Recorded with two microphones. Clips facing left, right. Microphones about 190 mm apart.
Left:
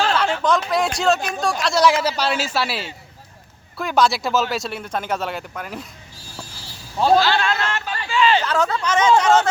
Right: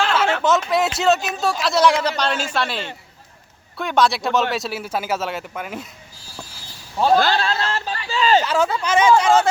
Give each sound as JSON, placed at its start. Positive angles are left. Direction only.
{"t": 0.4, "sound": "speech", "side_deg": -5}
{"t": 7.2, "sound": "a sound", "side_deg": -40}
{"t": 8.4, "sound": "speech", "side_deg": -5}